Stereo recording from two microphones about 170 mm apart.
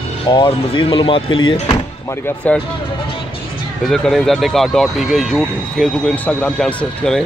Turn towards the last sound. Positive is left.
turn(degrees=5)  # may be behind; listen again after turning